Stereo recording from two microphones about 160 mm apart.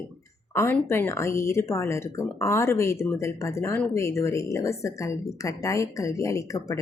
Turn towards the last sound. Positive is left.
turn(degrees=20)  # may be behind; listen again after turning